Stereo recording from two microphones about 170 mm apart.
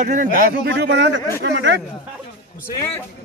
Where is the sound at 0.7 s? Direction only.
90° right.